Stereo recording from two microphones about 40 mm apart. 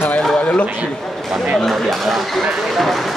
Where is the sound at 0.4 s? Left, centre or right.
Left.